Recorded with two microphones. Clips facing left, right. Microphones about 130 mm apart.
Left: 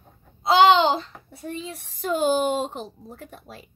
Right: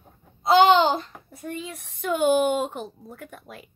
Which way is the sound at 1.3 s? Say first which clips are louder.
Even; 30° left (ahead or behind).